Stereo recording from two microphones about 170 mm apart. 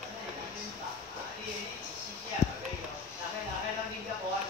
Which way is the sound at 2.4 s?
15° left (ahead or behind).